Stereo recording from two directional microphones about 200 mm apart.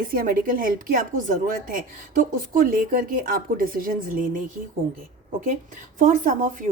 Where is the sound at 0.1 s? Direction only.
45° right (ahead or behind).